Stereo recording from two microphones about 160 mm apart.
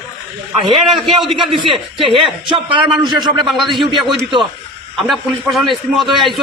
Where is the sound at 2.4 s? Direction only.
30° right (ahead or behind).